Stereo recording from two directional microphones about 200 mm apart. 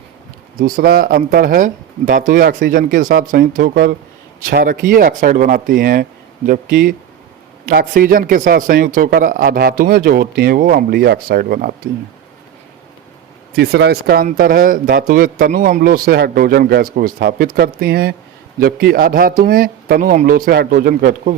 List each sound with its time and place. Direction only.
0.6 s speech: 50° right (ahead or behind)
13.5 s speech: 50° right (ahead or behind)